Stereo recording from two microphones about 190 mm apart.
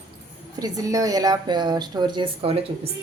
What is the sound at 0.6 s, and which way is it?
Speech, 20° right (ahead or behind).